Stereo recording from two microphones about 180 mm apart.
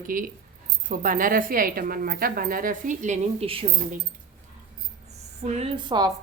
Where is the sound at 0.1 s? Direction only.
50° right (ahead or behind); by 3.7 s 30° right (ahead or behind).